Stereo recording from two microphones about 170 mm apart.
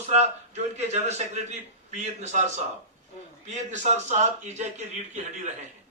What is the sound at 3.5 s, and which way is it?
A man's voice, 45° right (ahead or behind).